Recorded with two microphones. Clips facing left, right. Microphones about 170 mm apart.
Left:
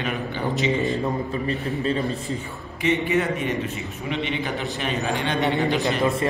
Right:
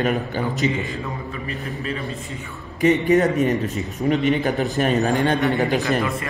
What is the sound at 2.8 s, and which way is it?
A man's voice, 40° right (ahead or behind).